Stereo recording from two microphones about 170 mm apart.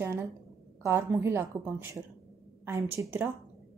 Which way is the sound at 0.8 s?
15° right (ahead or behind).